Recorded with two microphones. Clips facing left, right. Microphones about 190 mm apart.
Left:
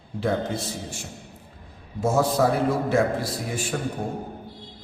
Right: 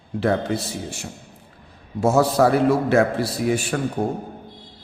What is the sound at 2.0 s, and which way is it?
A man's voice, 70° right (ahead or behind).